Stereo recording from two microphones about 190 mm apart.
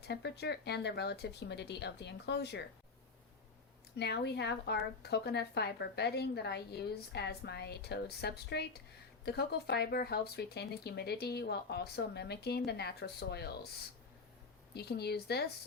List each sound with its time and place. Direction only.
0.0 s speech: 60° left (ahead or behind)
3.9 s speech: 60° left (ahead or behind)
14.8 s speech: 60° left (ahead or behind)